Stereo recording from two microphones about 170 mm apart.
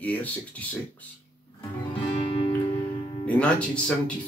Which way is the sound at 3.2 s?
5° left (ahead or behind).